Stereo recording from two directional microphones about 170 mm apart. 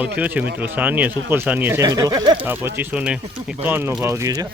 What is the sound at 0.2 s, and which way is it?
Speech, 10° right (ahead or behind).